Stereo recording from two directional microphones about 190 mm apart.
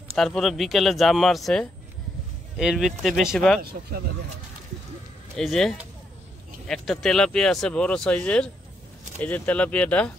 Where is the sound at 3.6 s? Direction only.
55° right (ahead or behind).